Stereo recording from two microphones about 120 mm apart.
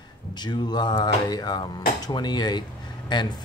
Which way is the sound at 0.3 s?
40° left (ahead or behind).